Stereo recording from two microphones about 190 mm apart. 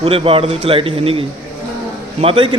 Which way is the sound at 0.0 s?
30° right (ahead or behind).